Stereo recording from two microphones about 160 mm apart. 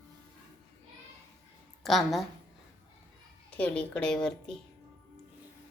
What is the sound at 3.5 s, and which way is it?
Speech, 10° left (ahead or behind).